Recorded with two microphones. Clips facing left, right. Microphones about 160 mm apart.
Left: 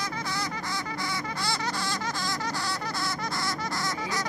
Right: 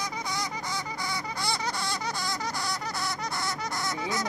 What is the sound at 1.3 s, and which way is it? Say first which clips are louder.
Baby laughter: right 1 dB; 15° right (ahead or behind).